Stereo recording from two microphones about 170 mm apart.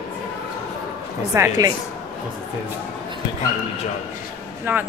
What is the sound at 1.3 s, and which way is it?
Speech, 20° right (ahead or behind).